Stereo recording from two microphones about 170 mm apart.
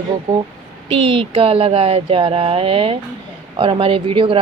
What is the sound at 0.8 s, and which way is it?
Speech, 35° right (ahead or behind).